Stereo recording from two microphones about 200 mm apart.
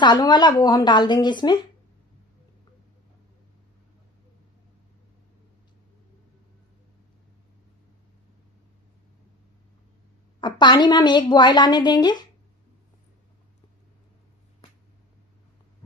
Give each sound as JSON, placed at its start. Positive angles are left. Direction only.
{"t": 0.0, "sound": "a woman's voice", "side_deg": 20}
{"t": 10.4, "sound": "a woman's voice", "side_deg": 20}